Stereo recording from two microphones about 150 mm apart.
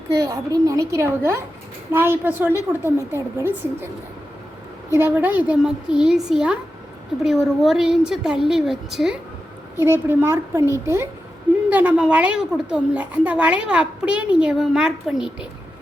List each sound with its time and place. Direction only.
0.1 s a woman's voice: 25° right (ahead or behind)
4.9 s a woman's voice: 15° right (ahead or behind)
9.7 s a woman's voice: 15° right (ahead or behind)